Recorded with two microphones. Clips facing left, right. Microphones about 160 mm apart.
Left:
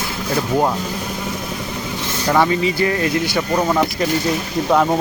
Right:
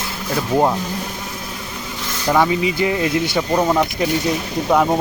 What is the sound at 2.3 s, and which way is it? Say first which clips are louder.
Speech: even; 10° right (ahead or behind).